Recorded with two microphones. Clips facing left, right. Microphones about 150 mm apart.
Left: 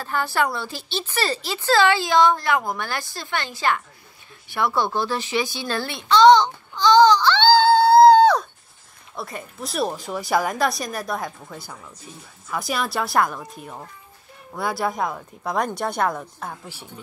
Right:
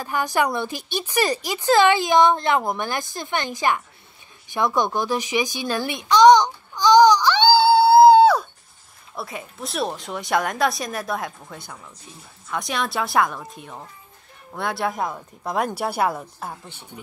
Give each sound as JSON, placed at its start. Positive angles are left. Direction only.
{"t": 0.0, "sound": "speech", "side_deg": -15}
{"t": 4.5, "sound": "a sound", "side_deg": -15}
{"t": 9.1, "sound": "speech", "side_deg": 0}